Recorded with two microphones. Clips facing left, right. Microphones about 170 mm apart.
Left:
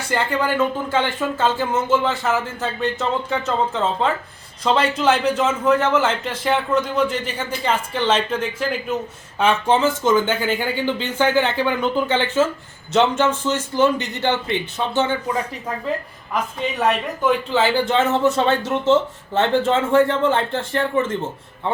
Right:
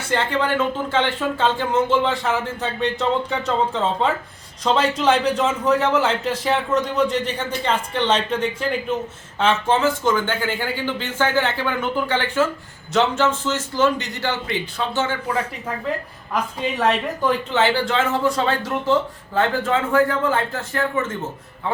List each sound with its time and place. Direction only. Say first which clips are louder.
0.1 s speech: even; 5° left (ahead or behind)
9.4 s speech: left 1 dB; 15° left (ahead or behind)
17.2 s speech: left 1 dB; 10° left (ahead or behind); by 21.2 s 30° left (ahead or behind)